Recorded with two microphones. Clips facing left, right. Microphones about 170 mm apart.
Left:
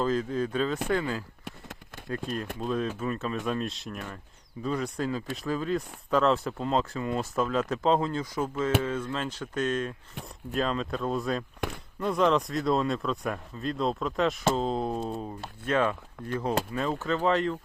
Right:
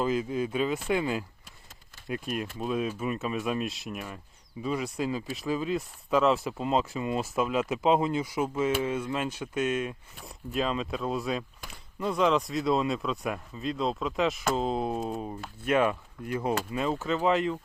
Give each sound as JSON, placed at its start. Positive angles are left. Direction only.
{"t": 0.0, "sound": "speech", "side_deg": -10}